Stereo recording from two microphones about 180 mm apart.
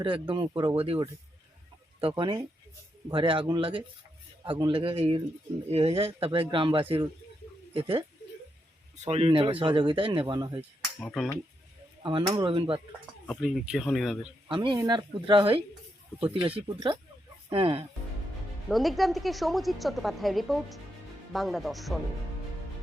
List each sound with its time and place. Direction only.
0.0 s speech: 25° right (ahead or behind)
9.0 s speech: 30° right (ahead or behind)
11.0 s a woman's voice: centre (ahead or behind)
12.0 s speech: 20° right (ahead or behind)
13.2 s a woman's voice: centre (ahead or behind)
14.4 s speech: 25° right (ahead or behind)
18.7 s a woman's voice: centre (ahead or behind)